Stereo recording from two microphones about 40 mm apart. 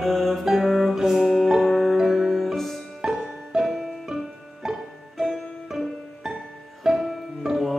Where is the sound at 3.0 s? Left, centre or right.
Centre.